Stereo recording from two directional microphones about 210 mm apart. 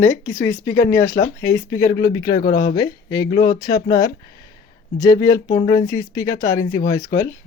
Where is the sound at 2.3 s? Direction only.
45° left (ahead or behind).